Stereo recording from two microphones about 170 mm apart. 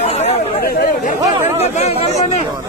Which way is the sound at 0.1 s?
40° left (ahead or behind).